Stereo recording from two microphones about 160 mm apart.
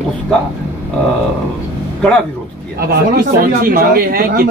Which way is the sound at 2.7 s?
70° right (ahead or behind).